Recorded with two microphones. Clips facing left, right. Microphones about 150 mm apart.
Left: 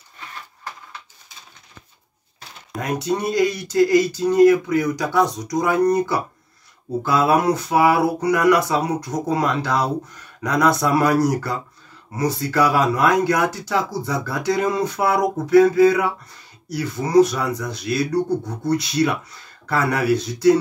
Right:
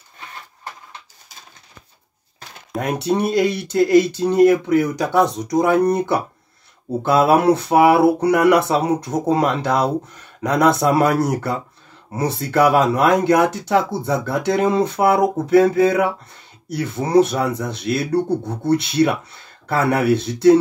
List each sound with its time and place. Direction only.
2.8 s speech: 25° right (ahead or behind)